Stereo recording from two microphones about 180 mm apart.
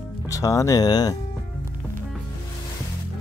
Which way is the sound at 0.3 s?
20° left (ahead or behind).